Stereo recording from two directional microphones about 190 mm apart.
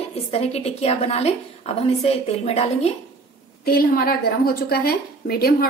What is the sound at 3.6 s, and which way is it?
A woman's voice, 55° left (ahead or behind).